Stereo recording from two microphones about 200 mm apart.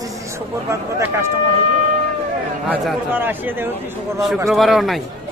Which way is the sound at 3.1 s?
10° right (ahead or behind).